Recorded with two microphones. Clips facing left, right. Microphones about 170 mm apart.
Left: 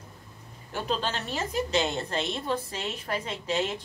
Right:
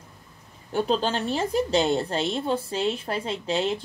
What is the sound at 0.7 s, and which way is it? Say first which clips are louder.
A woman's voice: right 6 dB; 35° right (ahead or behind).